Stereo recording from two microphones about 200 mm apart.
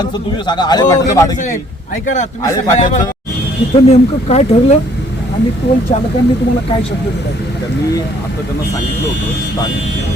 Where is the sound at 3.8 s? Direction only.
30° left (ahead or behind).